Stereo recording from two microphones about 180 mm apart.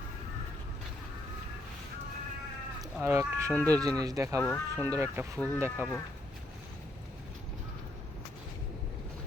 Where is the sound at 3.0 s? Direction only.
15° right (ahead or behind).